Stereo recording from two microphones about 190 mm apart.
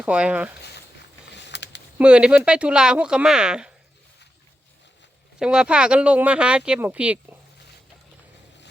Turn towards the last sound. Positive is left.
turn(degrees=-5)  # may be behind; listen again after turning